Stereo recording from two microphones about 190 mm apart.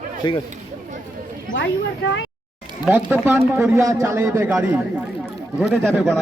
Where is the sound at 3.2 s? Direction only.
15° right (ahead or behind).